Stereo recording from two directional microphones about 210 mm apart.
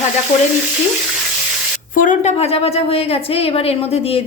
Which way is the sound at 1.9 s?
40° left (ahead or behind).